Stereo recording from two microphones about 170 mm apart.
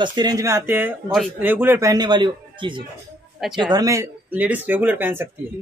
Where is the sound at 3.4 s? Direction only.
Centre (ahead or behind).